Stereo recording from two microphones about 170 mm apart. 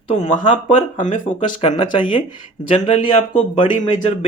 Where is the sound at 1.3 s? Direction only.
30° left (ahead or behind).